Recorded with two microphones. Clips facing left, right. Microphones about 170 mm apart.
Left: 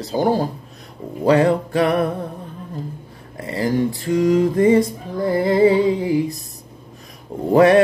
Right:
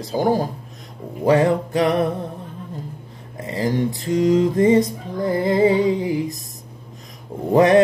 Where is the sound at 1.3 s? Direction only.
20° right (ahead or behind).